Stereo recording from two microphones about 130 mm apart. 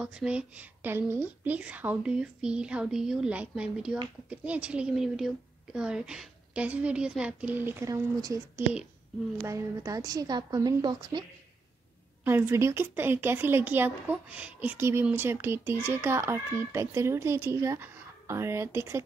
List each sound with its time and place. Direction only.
0.0 s a woman's voice: 10° right (ahead or behind); by 8.4 s 25° right (ahead or behind)
9.4 s speech: 25° right (ahead or behind)
12.3 s speech: 20° right (ahead or behind)